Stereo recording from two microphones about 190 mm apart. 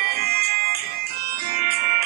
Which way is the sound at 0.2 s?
55° right (ahead or behind).